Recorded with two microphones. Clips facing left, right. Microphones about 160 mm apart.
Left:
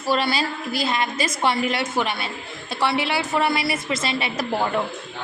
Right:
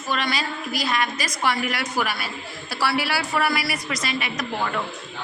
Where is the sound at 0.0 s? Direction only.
30° left (ahead or behind).